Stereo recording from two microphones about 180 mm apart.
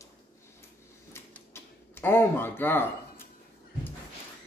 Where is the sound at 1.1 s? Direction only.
15° left (ahead or behind).